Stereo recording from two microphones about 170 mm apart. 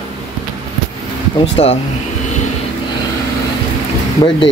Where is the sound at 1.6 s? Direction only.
35° left (ahead or behind).